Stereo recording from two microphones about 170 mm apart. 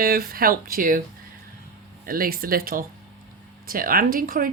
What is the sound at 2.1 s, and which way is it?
Speech, 60° right (ahead or behind).